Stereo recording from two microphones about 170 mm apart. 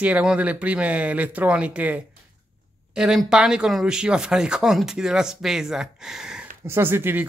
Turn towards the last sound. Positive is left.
turn(degrees=-15)  # may be behind; listen again after turning